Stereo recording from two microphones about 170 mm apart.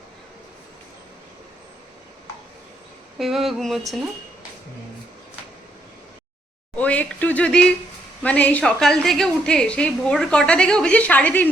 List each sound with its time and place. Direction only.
3.2 s a woman's voice: centre (ahead or behind)
6.7 s a woman's voice: 10° left (ahead or behind)